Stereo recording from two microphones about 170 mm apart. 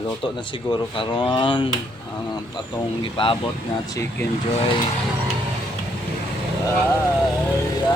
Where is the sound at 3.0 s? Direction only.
30° left (ahead or behind).